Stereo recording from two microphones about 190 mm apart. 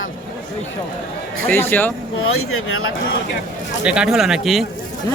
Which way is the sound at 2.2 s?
90° left.